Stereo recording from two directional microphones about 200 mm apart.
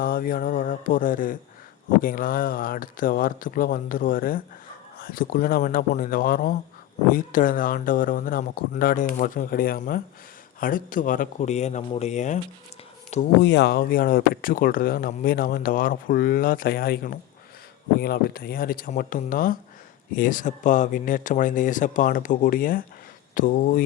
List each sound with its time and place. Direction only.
0.0 s speech: 45° left (ahead or behind)
13.4 s speech: 60° left (ahead or behind); by 23.8 s 45° left (ahead or behind)